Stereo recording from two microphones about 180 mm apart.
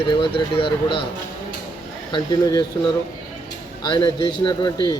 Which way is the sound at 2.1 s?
20° left (ahead or behind).